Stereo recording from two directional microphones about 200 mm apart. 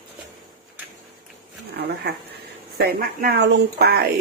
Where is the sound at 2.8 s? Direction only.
50° right (ahead or behind).